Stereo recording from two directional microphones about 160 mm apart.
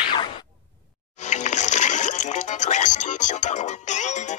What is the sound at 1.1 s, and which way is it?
Music, 45° left (ahead or behind).